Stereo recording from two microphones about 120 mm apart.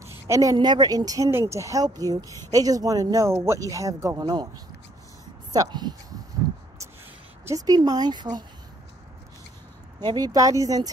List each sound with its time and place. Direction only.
0.0 s a woman's voice: 25° right (ahead or behind)
2.2 s speech: 25° left (ahead or behind)
2.5 s a woman's voice: 30° right (ahead or behind)
5.5 s speech: 35° right (ahead or behind)
7.4 s speech: 30° right (ahead or behind)
9.9 s speech: 35° right (ahead or behind)